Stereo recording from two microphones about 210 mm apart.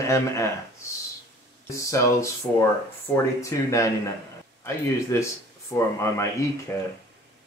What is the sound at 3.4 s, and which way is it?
Speech, 15° left (ahead or behind).